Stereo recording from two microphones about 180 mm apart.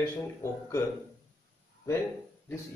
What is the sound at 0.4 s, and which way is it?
Speech, 15° left (ahead or behind).